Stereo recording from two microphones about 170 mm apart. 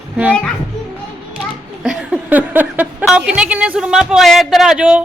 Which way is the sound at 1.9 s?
5° right (ahead or behind).